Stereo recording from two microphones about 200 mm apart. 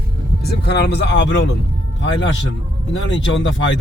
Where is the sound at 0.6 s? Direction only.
55° left (ahead or behind).